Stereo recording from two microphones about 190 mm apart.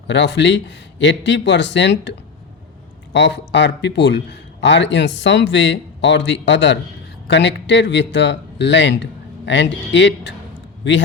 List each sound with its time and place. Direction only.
0.1 s a man's voice: 70° left (ahead or behind)